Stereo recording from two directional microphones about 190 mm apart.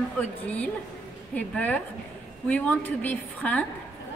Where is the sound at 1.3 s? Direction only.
10° left (ahead or behind).